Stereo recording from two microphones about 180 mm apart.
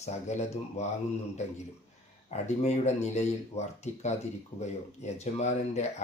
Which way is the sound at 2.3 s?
40° left (ahead or behind).